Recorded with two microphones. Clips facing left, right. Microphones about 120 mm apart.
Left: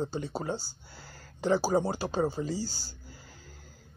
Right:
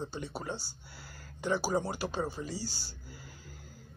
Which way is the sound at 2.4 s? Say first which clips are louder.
Left 7 dB; 40° left (ahead or behind).